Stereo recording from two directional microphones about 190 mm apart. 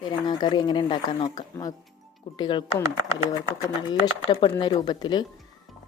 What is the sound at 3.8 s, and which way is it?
Speech, 25° left (ahead or behind).